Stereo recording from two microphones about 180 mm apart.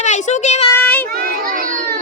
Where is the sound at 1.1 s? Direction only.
55° right (ahead or behind).